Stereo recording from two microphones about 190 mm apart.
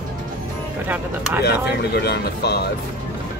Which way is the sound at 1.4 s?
60° left (ahead or behind).